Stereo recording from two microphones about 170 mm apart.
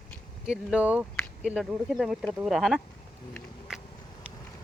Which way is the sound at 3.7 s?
5° right (ahead or behind).